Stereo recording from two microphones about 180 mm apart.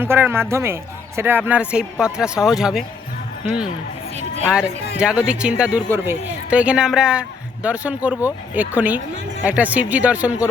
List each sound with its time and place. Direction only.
0.0 s speech: 10° right (ahead or behind)
4.4 s speech: 5° right (ahead or behind)